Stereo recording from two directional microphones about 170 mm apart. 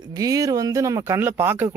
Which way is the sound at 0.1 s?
20° right (ahead or behind).